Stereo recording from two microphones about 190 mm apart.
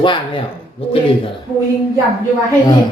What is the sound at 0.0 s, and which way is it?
Speech, 25° left (ahead or behind).